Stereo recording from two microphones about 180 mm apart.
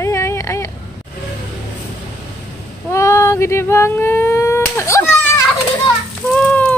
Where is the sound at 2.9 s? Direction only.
15° left (ahead or behind).